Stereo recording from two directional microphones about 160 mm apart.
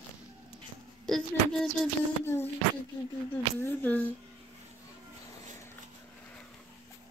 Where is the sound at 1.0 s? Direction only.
Centre (ahead or behind).